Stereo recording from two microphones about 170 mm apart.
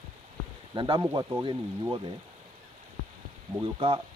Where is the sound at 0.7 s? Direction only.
25° right (ahead or behind).